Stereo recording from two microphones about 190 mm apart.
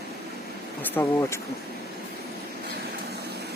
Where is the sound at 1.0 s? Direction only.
10° left (ahead or behind).